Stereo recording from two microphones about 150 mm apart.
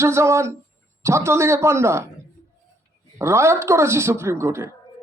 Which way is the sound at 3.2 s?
20° right (ahead or behind).